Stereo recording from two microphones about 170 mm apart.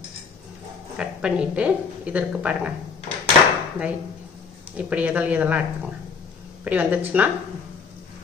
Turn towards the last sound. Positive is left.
turn(degrees=-10)  # may be behind; listen again after turning